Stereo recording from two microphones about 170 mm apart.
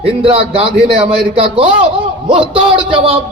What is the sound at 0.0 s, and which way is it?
A man's voice, 35° right (ahead or behind).